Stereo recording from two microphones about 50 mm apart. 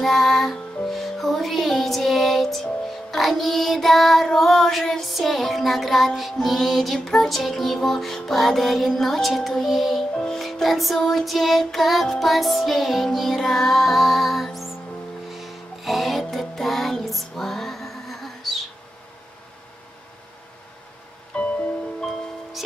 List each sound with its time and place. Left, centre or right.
0.0 s music: centre
4.3 s female singing: centre
5.0 s music: centre
10.1 s music: centre
10.4 s music: centre
21.4 s music: left